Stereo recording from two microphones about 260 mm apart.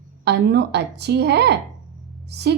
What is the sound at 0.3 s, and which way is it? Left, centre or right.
Speech, right.